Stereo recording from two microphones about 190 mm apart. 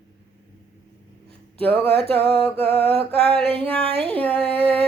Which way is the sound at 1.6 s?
10° left (ahead or behind).